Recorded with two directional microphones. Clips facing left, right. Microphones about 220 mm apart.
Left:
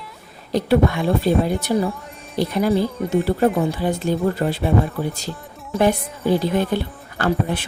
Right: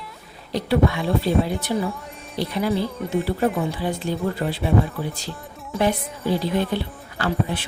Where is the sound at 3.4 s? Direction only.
50° left (ahead or behind).